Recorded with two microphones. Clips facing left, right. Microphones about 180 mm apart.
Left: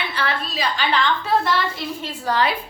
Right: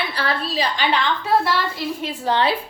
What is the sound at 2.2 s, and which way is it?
Speech, 25° right (ahead or behind).